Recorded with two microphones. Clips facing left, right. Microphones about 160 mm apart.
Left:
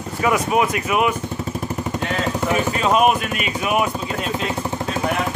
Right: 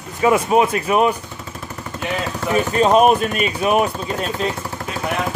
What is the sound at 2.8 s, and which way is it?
Speech, 35° right (ahead or behind).